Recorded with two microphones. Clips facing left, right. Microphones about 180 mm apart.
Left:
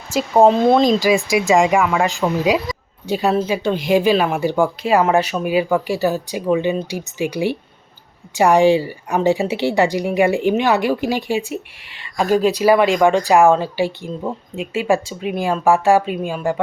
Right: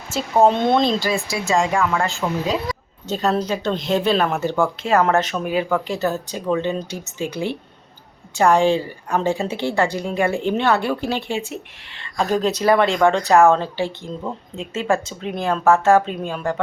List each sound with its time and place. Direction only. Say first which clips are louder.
0.4 s speech: left 3 dB; 5° left (ahead or behind)
1.0 s speech: left 7 dB; 15° left (ahead or behind)